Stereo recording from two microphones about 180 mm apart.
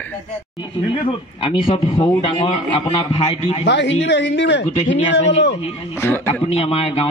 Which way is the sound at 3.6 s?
75° left (ahead or behind).